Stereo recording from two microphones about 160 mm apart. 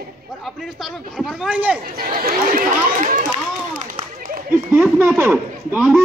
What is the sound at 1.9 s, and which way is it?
Speech, 65° right (ahead or behind).